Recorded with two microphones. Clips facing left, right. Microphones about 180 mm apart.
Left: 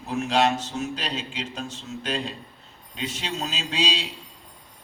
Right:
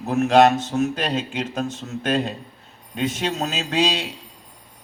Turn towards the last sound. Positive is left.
turn(degrees=-50)  # may be behind; listen again after turning